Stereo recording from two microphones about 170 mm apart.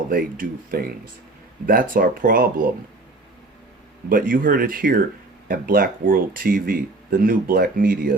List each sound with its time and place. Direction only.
0.1 s speech: 55° right (ahead or behind)
4.1 s speech: 55° right (ahead or behind)